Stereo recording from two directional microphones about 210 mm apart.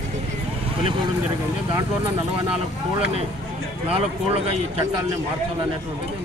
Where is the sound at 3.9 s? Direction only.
30° right (ahead or behind).